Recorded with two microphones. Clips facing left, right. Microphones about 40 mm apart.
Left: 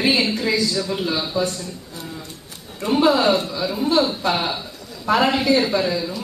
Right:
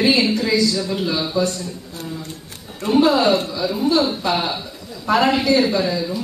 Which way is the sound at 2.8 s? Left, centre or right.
Centre.